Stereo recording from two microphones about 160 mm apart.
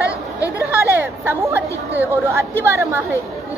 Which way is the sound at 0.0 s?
20° left (ahead or behind).